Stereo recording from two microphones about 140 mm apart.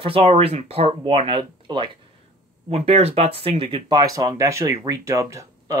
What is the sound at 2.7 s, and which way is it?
Speech, 45° right (ahead or behind).